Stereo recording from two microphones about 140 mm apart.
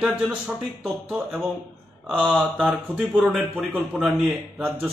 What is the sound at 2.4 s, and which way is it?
Speech, 10° right (ahead or behind).